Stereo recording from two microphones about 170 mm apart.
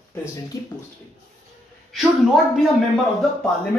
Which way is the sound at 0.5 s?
20° left (ahead or behind).